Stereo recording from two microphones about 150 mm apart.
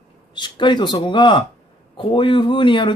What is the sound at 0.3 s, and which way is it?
Speech, 30° left (ahead or behind).